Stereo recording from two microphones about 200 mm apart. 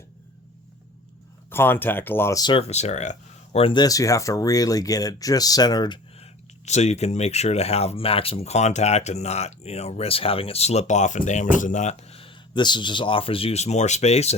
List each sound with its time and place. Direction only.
1.5 s speech: 10° left (ahead or behind)
6.7 s speech: 35° left (ahead or behind)